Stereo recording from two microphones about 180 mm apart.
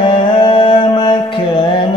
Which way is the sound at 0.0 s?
30° left (ahead or behind).